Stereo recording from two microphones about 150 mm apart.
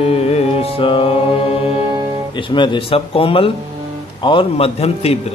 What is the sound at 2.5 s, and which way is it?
Speech, 30° left (ahead or behind).